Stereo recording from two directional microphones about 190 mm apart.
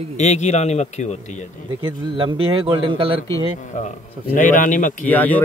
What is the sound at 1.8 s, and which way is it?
A man's voice, 25° right (ahead or behind).